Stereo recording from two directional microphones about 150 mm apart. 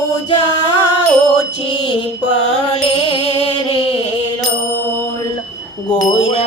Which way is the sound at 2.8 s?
35° left (ahead or behind).